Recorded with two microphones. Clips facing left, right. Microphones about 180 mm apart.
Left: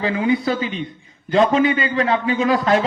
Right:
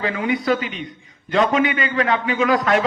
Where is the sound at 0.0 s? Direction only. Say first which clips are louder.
Left 3 dB; 30° left (ahead or behind).